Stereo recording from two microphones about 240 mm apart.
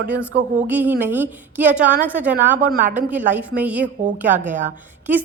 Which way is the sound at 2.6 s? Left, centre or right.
Right.